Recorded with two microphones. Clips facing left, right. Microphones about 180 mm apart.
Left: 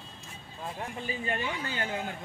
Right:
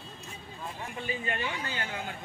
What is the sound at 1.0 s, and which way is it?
Speech, 35° left (ahead or behind).